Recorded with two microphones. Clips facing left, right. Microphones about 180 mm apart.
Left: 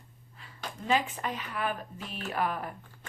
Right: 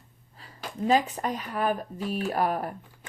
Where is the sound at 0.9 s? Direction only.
40° right (ahead or behind).